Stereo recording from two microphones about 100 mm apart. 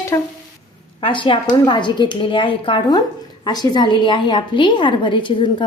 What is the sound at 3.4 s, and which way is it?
A woman's voice, 45° left (ahead or behind).